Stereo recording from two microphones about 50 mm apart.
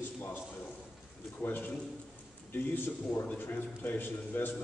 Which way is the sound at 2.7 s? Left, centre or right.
Left.